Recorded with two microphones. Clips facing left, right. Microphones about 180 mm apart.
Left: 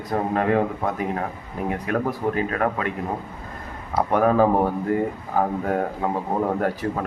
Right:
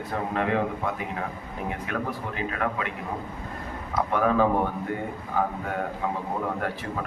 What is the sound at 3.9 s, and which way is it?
A man's voice, 40° left (ahead or behind).